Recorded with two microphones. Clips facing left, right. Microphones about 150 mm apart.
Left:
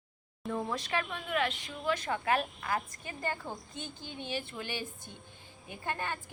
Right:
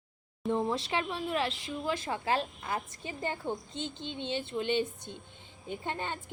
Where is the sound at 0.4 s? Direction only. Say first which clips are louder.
Right 5 dB; 25° right (ahead or behind).